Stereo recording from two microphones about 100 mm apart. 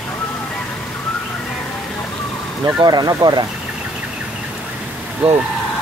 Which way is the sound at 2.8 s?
45° right (ahead or behind).